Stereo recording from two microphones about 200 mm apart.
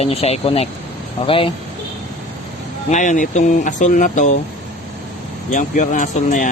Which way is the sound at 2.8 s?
40° left (ahead or behind).